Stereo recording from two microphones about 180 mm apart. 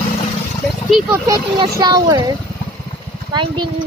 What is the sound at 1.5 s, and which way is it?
Speech, 25° right (ahead or behind).